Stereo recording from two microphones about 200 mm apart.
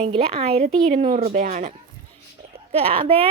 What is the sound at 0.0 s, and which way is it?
Speech, 30° right (ahead or behind).